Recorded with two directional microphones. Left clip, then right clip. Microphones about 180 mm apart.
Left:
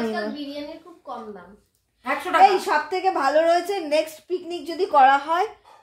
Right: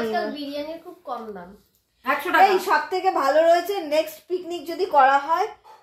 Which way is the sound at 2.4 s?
20° left (ahead or behind).